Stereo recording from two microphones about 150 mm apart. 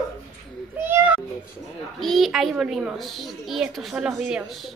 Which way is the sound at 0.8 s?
15° right (ahead or behind).